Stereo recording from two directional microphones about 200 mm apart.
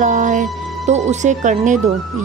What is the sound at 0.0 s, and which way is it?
Music, 40° right (ahead or behind).